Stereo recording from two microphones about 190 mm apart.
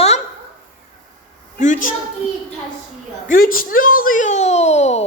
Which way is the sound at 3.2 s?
50° left (ahead or behind).